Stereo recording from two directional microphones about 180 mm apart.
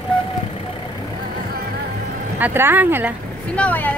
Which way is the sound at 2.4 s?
10° right (ahead or behind).